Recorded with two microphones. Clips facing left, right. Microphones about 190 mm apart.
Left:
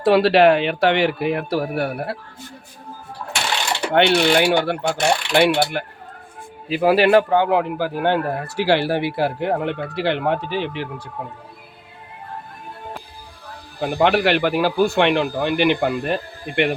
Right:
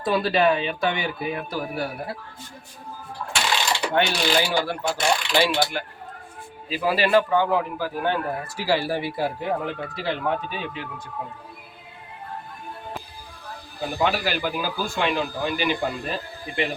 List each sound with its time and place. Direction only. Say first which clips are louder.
0.0 s speech: left 7 dB; 70° left (ahead or behind)
3.9 s speech: left 7 dB; 65° left (ahead or behind)
13.8 s speech: left 7 dB; 65° left (ahead or behind)